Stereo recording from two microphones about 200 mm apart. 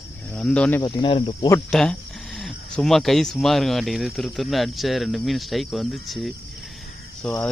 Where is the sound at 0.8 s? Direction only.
25° left (ahead or behind).